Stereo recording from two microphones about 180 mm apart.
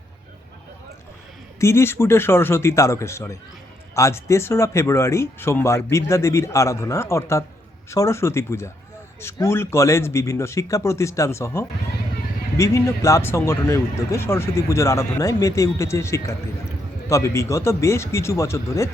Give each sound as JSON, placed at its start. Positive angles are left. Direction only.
{"t": 1.5, "sound": "speech", "side_deg": 15}